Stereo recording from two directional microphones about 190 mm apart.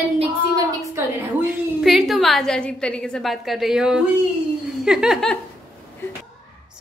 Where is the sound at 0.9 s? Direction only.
5° right (ahead or behind).